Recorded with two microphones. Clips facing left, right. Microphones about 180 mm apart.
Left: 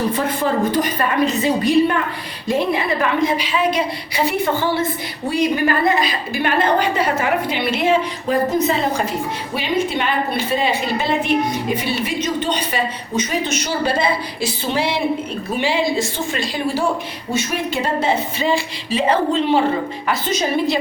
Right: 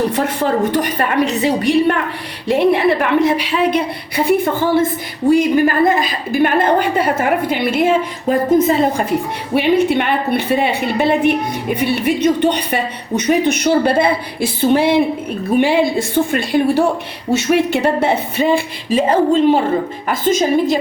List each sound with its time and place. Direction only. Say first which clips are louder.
0.7 s a woman's voice: right 2 dB; 70° right (ahead or behind)
17.3 s a woman's voice: right 7 dB; 70° right (ahead or behind); by 20.7 s 45° right (ahead or behind)